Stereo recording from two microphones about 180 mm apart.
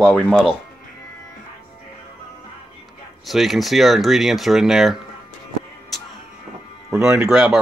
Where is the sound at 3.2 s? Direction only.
Centre (ahead or behind).